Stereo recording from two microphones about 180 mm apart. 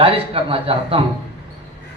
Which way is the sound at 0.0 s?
30° right (ahead or behind).